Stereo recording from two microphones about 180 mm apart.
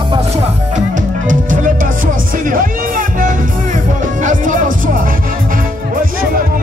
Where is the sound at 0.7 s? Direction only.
45° right (ahead or behind).